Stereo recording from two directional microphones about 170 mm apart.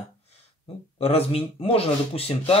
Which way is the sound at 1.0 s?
35° left (ahead or behind).